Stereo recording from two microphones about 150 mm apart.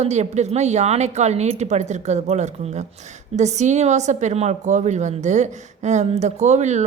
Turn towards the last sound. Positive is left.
turn(degrees=-50)  # may be behind; listen again after turning